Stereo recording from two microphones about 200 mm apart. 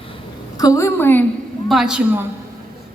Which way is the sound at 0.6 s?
15° left (ahead or behind).